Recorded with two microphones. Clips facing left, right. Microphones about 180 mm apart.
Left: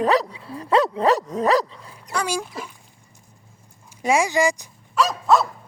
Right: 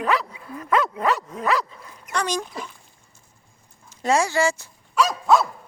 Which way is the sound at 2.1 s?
10° left (ahead or behind).